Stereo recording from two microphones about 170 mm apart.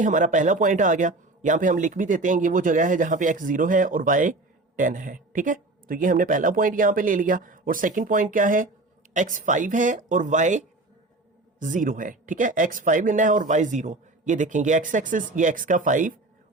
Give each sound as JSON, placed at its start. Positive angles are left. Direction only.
{"t": 0.0, "sound": "speech", "side_deg": -45}
{"t": 11.6, "sound": "speech", "side_deg": -50}